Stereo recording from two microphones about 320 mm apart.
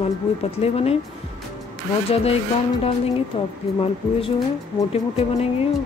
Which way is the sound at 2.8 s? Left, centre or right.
Centre.